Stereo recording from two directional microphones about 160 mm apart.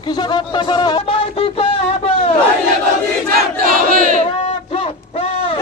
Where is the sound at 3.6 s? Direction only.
60° right (ahead or behind).